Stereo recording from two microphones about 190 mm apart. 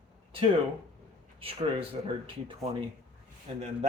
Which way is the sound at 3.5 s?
35° right (ahead or behind).